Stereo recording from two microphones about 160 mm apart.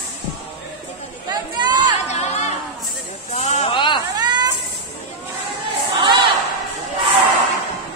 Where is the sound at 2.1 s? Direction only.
45° left (ahead or behind).